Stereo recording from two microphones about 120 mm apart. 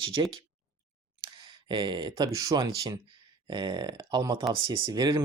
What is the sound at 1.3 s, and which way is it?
Speech, 40° right (ahead or behind).